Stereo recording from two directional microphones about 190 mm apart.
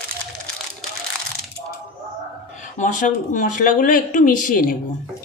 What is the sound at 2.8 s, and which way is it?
Speech, 40° left (ahead or behind).